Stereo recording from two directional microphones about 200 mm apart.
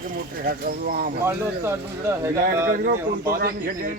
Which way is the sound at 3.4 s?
45° right (ahead or behind).